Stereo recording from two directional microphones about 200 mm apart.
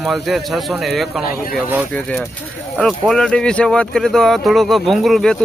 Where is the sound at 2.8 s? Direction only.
5° left (ahead or behind).